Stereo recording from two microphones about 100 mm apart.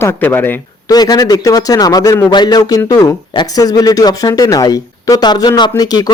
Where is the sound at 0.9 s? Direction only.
40° left (ahead or behind).